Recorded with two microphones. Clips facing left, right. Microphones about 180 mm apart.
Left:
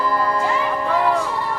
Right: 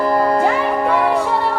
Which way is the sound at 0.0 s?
50° right (ahead or behind).